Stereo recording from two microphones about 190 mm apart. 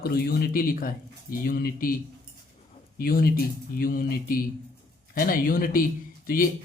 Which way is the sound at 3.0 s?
50° left (ahead or behind).